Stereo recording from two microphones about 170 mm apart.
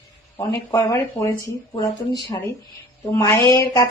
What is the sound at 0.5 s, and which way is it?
A woman's voice, 20° left (ahead or behind).